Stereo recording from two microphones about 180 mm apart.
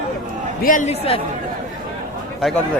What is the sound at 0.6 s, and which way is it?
Speech, 45° left (ahead or behind).